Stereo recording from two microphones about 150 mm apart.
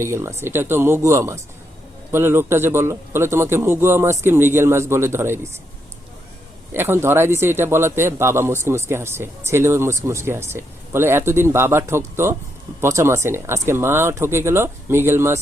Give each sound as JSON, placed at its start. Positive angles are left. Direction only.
{"t": 0.0, "sound": "a man's voice", "side_deg": -20}
{"t": 6.7, "sound": "a man's voice", "side_deg": -15}